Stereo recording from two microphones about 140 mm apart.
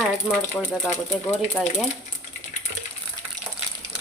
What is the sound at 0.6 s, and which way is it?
Speech, 15° left (ahead or behind).